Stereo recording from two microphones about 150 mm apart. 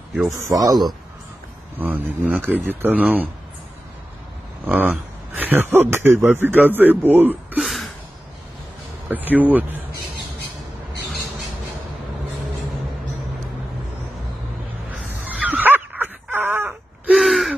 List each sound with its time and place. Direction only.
0.4 s speech: 25° right (ahead or behind)
1.8 s a man's voice: 10° right (ahead or behind)
4.6 s a man's voice: 10° right (ahead or behind)
7.5 s gasp: centre (ahead or behind)
9.1 s speech: 10° right (ahead or behind)
14.9 s dog: 5° right (ahead or behind)
17.1 s gasp: centre (ahead or behind)